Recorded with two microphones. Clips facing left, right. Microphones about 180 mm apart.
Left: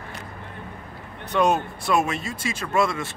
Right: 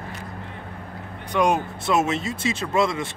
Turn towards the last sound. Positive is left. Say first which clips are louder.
# right 1 dB
turn(degrees=-20)  # may be behind; listen again after turning